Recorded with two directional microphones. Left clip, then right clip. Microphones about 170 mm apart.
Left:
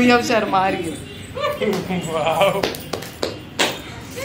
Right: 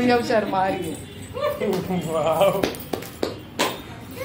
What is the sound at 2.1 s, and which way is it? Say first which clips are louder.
Speech: left 2 dB; 35° right (ahead or behind).